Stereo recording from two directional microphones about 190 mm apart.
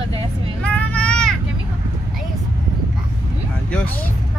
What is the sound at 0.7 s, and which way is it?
Vehicle, 5° left (ahead or behind).